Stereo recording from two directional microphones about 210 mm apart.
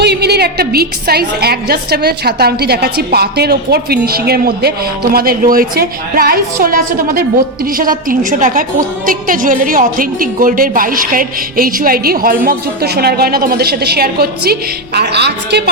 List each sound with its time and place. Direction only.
0.0 s a woman's voice: 50° right (ahead or behind)